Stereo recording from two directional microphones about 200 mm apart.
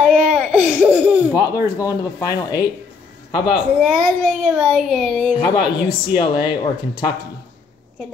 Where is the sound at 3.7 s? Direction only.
Centre (ahead or behind).